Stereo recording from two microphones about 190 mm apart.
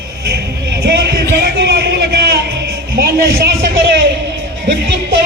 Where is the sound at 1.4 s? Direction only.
60° right (ahead or behind).